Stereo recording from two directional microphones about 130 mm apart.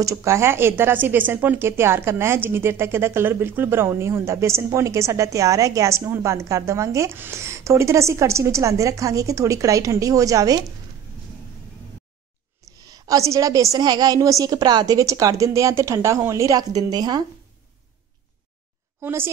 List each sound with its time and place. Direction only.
0.0 s speech: 20° right (ahead or behind)
12.8 s speech: 30° right (ahead or behind)
18.9 s a woman's voice: 20° right (ahead or behind)